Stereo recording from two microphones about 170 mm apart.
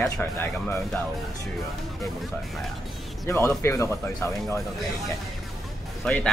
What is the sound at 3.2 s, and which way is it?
Speech, 15° left (ahead or behind).